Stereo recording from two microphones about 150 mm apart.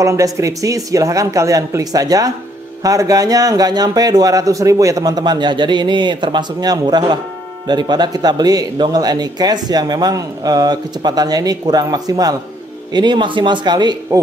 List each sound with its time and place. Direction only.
0.0 s speech: 20° right (ahead or behind)